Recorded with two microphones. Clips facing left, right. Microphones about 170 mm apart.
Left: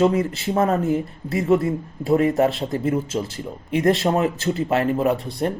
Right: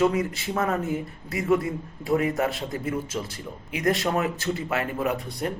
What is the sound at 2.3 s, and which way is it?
Speech, 30° left (ahead or behind).